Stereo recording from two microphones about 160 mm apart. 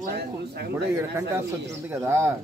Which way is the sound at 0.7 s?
15° right (ahead or behind).